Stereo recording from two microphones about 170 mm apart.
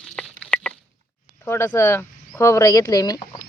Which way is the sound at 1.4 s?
10° left (ahead or behind).